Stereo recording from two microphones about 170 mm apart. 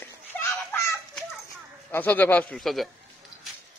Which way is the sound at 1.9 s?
10° left (ahead or behind).